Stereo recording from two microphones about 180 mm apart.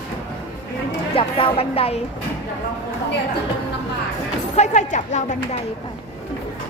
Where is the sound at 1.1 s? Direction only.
30° left (ahead or behind).